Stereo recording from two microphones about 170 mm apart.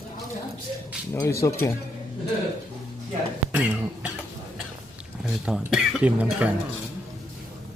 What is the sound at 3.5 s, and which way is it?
Cough, 10° right (ahead or behind).